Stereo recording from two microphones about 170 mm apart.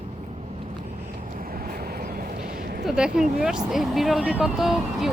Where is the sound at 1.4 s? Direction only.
60° right (ahead or behind).